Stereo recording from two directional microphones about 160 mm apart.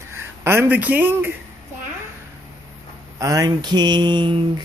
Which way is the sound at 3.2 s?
20° right (ahead or behind).